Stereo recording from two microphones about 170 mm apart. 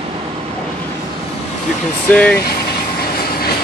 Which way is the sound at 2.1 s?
5° left (ahead or behind).